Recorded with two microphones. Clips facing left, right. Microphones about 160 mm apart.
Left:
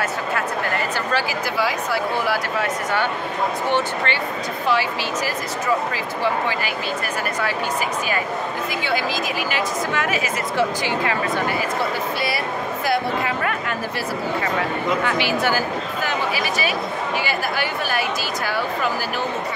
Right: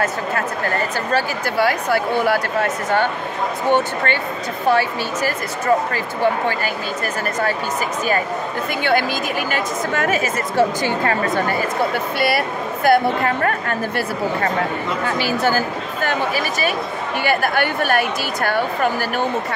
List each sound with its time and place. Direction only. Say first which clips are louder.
1.1 s speech: right 5 dB; 60° right (ahead or behind)
8.8 s speech: right 5 dB; 55° right (ahead or behind)
12.2 s speech: right 4 dB; 60° right (ahead or behind)